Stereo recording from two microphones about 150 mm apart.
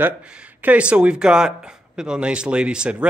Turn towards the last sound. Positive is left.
turn(degrees=-5)  # may be behind; listen again after turning